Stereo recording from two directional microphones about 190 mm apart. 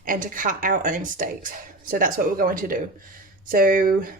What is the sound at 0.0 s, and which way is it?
Speech, 45° right (ahead or behind).